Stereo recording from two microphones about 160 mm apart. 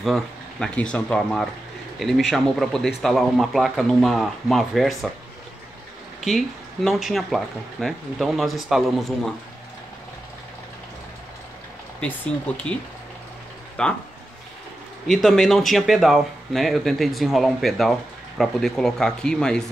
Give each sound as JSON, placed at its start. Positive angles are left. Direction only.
{"t": 0.0, "sound": "speech", "side_deg": 0}
{"t": 6.2, "sound": "speech", "side_deg": 0}
{"t": 13.8, "sound": "speech", "side_deg": 5}
{"t": 15.0, "sound": "speech", "side_deg": 5}